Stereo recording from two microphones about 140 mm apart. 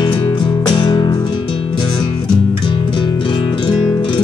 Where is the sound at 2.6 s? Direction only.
35° left (ahead or behind).